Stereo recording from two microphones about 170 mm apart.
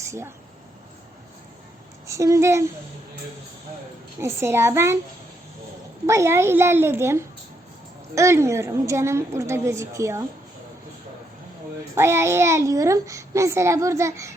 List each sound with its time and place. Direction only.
2.0 s a child's voice: 20° right (ahead or behind)
4.2 s a child's voice: 15° right (ahead or behind)
6.1 s a child's voice: 15° right (ahead or behind)
11.9 s a child's voice: 15° right (ahead or behind)